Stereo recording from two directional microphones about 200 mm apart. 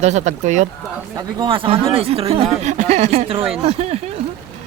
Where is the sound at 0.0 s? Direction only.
35° right (ahead or behind).